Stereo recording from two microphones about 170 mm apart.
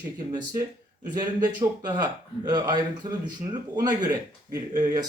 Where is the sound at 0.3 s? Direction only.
25° right (ahead or behind).